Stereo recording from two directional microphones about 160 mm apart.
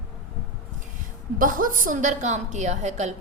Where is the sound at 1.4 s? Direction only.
60° right (ahead or behind).